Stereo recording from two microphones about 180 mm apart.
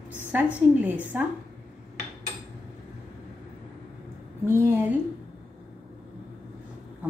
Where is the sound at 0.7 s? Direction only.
10° right (ahead or behind).